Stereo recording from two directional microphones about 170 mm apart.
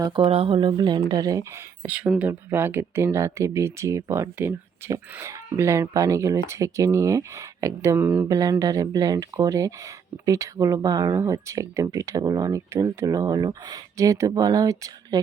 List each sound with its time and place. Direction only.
0.3 s speech: 35° right (ahead or behind)
1.8 s speech: 10° right (ahead or behind)